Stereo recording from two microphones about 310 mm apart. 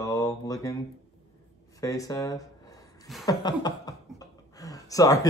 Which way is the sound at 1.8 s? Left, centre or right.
Centre.